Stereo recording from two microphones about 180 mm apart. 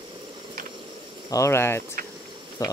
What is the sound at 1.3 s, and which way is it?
A man's voice, 15° left (ahead or behind).